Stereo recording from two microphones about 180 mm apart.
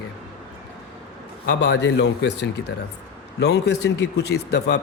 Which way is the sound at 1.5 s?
70° left (ahead or behind).